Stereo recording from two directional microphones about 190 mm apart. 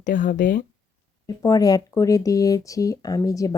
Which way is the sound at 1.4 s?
20° left (ahead or behind).